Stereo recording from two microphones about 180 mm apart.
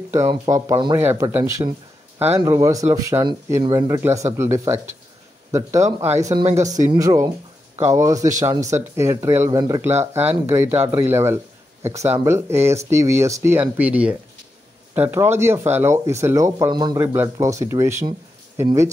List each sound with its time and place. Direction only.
0.1 s speech: 15° right (ahead or behind)